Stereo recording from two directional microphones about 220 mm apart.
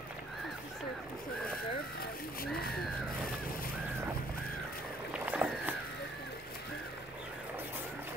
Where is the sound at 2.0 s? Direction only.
40° left (ahead or behind).